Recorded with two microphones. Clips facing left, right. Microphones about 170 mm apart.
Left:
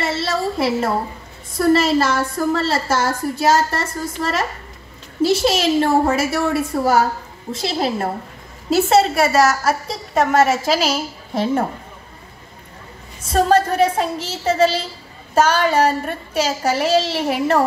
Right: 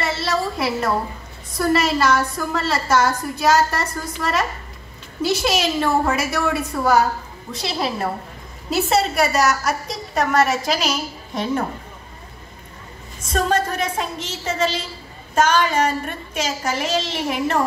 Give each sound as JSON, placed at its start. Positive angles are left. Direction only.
{"t": 0.0, "sound": "a woman's voice", "side_deg": 25}
{"t": 13.3, "sound": "a child's voice", "side_deg": 30}